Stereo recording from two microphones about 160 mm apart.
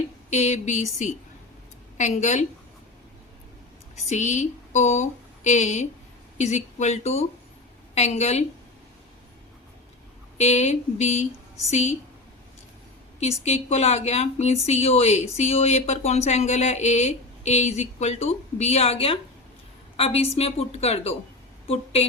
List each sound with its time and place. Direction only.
0.3 s speech: 45° left (ahead or behind)
4.1 s speech: 45° left (ahead or behind)
10.3 s speech: 45° left (ahead or behind)
13.4 s a woman's voice: 45° left (ahead or behind)